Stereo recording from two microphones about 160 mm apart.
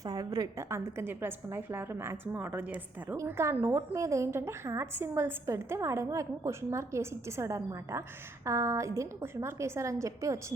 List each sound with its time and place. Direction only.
0.0 s a woman's voice: 20° right (ahead or behind)